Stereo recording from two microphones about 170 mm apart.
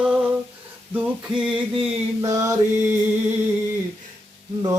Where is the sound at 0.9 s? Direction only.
5° right (ahead or behind).